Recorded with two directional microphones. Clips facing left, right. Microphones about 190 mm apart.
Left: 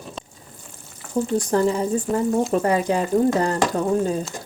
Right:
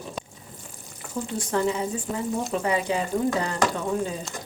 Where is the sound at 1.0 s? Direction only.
5° right (ahead or behind).